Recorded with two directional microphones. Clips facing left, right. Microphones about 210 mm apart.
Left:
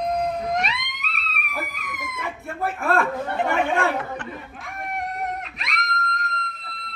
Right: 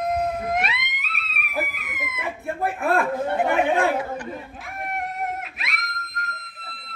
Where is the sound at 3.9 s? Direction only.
5° right (ahead or behind).